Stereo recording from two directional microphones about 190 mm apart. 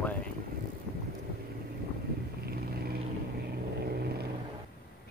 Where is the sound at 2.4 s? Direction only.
55° right (ahead or behind).